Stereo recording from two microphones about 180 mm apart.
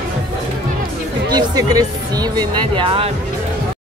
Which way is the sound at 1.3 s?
20° right (ahead or behind).